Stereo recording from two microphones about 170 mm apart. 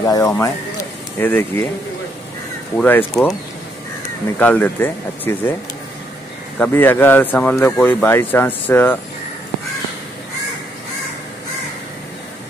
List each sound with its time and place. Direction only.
0.0 s speech: 20° left (ahead or behind)
2.7 s speech: 10° left (ahead or behind)
4.4 s speech: 10° left (ahead or behind)
6.6 s speech: 10° left (ahead or behind)